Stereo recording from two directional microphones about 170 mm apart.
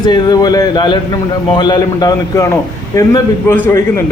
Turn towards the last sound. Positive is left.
turn(degrees=15)  # may be behind; listen again after turning